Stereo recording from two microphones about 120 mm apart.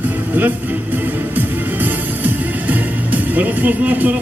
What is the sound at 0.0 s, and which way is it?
Vehicle, 15° right (ahead or behind).